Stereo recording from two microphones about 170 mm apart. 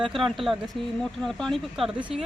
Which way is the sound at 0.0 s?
Centre (ahead or behind).